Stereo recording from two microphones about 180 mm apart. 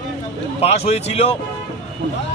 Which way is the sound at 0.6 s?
35° left (ahead or behind).